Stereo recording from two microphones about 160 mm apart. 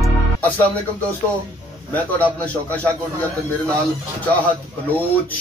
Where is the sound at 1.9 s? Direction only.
10° left (ahead or behind).